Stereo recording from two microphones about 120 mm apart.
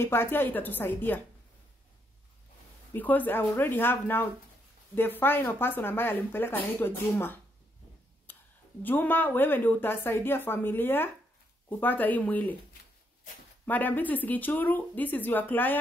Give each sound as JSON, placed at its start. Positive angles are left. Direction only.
{"t": 0.0, "sound": "speech", "side_deg": 20}
{"t": 2.9, "sound": "speech", "side_deg": 15}
{"t": 8.3, "sound": "a sound", "side_deg": 15}
{"t": 8.8, "sound": "speech", "side_deg": 15}
{"t": 13.7, "sound": "speech", "side_deg": 15}